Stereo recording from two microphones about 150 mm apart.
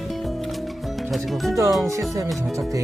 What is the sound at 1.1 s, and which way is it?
Speech, centre (ahead or behind).